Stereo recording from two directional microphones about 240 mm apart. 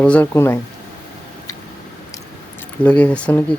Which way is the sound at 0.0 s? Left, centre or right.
Centre.